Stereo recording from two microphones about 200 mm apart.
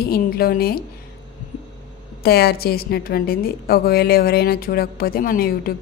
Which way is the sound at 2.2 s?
50° left (ahead or behind).